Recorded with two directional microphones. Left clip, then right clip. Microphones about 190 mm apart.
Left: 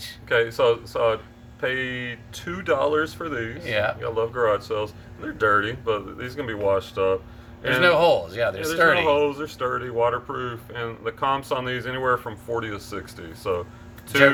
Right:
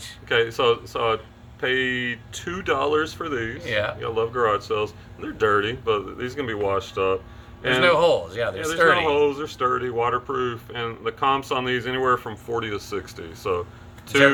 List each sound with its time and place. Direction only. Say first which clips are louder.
0.3 s speech: even; 15° right (ahead or behind)
3.6 s speech: left 3 dB; 15° left (ahead or behind)
4.0 s speech: even; 15° right (ahead or behind)
7.8 s speech: left 1 dB; 15° left (ahead or behind)
9.0 s speech: even; 10° right (ahead or behind)